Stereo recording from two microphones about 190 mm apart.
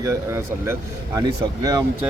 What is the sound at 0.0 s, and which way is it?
Speech, 15° right (ahead or behind).